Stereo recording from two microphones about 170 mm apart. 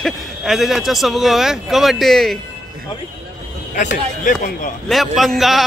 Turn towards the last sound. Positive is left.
turn(degrees=0)  # may be behind; listen again after turning